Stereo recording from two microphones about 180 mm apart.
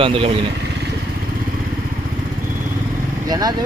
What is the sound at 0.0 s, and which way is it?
Speech, 30° right (ahead or behind).